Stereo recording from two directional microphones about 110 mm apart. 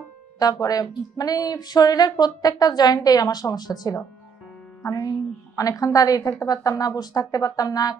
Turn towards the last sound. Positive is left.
turn(degrees=35)  # may be behind; listen again after turning